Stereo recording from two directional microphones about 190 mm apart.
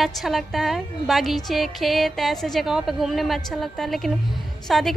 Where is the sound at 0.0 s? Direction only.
Centre (ahead or behind).